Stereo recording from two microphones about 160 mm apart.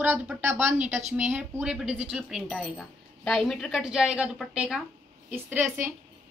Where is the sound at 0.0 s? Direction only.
10° right (ahead or behind).